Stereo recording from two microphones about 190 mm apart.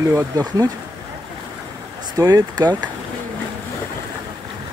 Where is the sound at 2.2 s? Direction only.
20° right (ahead or behind).